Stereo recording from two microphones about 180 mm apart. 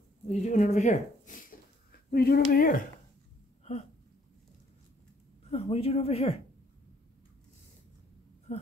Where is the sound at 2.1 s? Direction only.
60° left (ahead or behind).